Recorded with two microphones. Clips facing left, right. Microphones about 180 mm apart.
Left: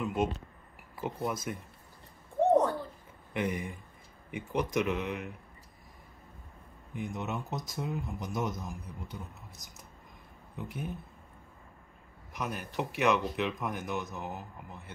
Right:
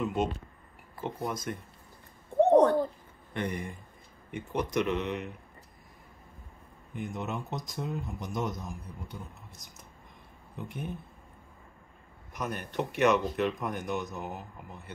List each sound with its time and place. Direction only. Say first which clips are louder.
0.0 s speech: right 1 dB; 5° left (ahead or behind)
3.3 s speech: left 1 dB; 5° left (ahead or behind)
6.9 s speech: right 1 dB; centre (ahead or behind)
12.4 s speech: right 2 dB; 5° left (ahead or behind)